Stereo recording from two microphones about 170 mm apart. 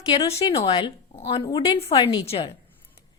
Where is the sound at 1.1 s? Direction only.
35° left (ahead or behind).